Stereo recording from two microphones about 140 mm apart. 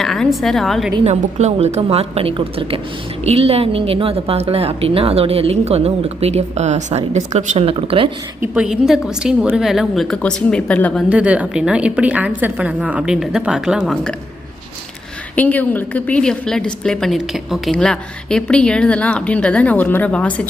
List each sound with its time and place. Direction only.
0.0 s a woman's voice: centre (ahead or behind)
1.0 s a woman's voice: 50° right (ahead or behind)
8.4 s a woman's voice: 5° right (ahead or behind); by 11.0 s 10° left (ahead or behind)
11.1 s a woman's voice: 10° right (ahead or behind)
15.4 s a woman's voice: 10° left (ahead or behind)